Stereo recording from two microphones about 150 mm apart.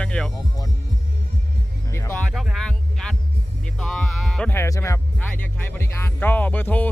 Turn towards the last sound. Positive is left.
turn(degrees=10)  # may be behind; listen again after turning